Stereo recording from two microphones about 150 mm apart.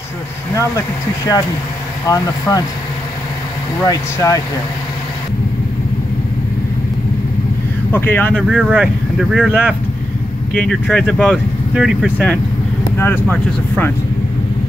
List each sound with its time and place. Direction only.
0.6 s speech: 20° left (ahead or behind)
3.8 s speech: 20° left (ahead or behind)
7.9 s speech: 15° left (ahead or behind)
8.4 s speech: 5° right (ahead or behind)
11.2 s speech: 5° right (ahead or behind)
12.9 s speech: 15° left (ahead or behind)